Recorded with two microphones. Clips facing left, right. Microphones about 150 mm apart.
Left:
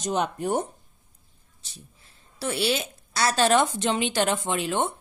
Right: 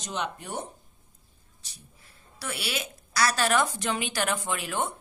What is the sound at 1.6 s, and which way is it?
A woman's voice, 25° left (ahead or behind).